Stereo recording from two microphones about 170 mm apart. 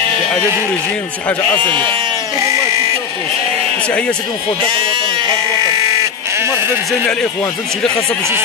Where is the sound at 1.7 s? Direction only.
25° right (ahead or behind).